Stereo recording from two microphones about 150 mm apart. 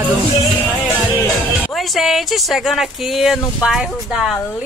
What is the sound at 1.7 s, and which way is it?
Speech, centre (ahead or behind).